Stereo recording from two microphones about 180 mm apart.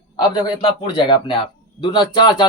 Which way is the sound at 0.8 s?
25° left (ahead or behind).